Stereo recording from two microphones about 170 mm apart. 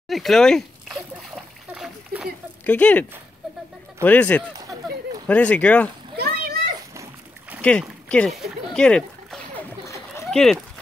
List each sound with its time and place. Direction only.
0.1 s a sound: centre (ahead or behind)
2.6 s speech: 10° left (ahead or behind)
6.1 s splash: 65° right (ahead or behind)
6.9 s splash: 15° right (ahead or behind)
8.1 s speech: 5° left (ahead or behind)